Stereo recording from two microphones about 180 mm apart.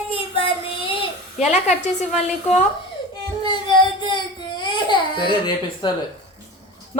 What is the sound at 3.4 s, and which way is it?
Baby cry, 25° left (ahead or behind).